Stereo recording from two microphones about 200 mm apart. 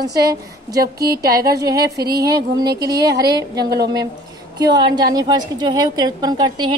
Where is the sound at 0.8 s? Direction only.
50° right (ahead or behind).